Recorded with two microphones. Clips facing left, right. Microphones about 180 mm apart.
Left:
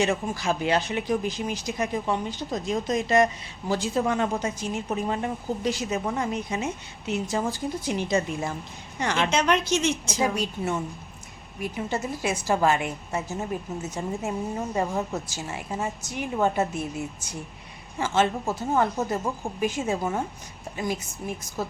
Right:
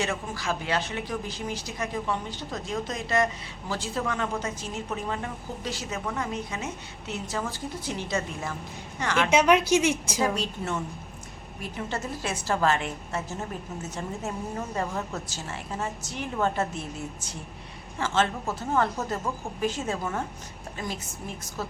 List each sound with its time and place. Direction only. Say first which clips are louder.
0.0 s a woman's voice: left 5 dB; 20° left (ahead or behind)
9.3 s a woman's voice: right 6 dB; 10° right (ahead or behind)
10.2 s speech: left 1 dB; 15° left (ahead or behind)
17.9 s speech: left 3 dB; 15° left (ahead or behind)